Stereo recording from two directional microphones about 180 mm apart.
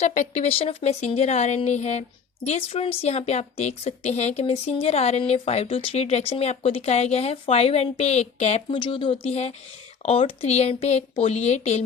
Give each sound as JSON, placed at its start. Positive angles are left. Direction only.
{"t": 0.0, "sound": "speech", "side_deg": 40}